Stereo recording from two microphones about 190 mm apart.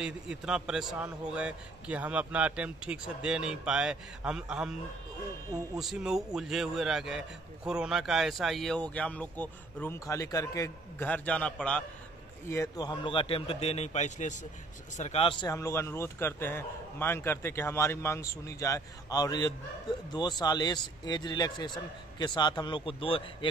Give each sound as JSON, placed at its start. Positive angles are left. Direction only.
{"t": 0.0, "sound": "a man's voice", "side_deg": -5}
{"t": 5.8, "sound": "a man's voice", "side_deg": 0}
{"t": 12.4, "sound": "a man's voice", "side_deg": 15}
{"t": 15.4, "sound": "a man's voice", "side_deg": 15}